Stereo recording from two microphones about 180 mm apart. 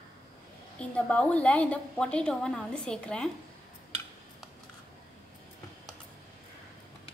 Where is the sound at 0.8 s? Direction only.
5° left (ahead or behind).